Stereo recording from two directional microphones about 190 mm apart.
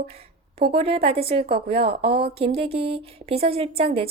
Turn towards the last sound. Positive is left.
turn(degrees=-30)  # may be behind; listen again after turning